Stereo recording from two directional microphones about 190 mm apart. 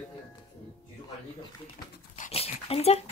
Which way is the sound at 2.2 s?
35° left (ahead or behind).